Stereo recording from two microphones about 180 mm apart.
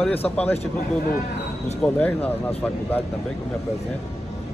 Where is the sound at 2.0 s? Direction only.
10° left (ahead or behind).